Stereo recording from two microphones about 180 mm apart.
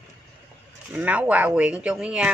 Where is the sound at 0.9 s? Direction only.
10° right (ahead or behind).